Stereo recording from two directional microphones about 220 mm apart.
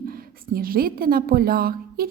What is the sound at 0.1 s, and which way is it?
A woman's voice, 40° right (ahead or behind).